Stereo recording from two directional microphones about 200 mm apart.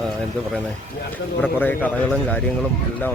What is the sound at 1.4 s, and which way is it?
Speech, 10° left (ahead or behind).